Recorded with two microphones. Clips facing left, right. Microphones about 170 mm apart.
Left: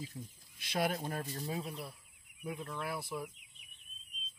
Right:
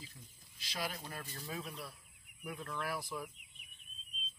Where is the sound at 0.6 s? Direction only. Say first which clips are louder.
Left 8 dB; 50° left (ahead or behind).